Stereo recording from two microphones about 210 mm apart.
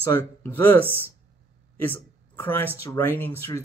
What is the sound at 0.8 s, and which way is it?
Speech, 10° right (ahead or behind).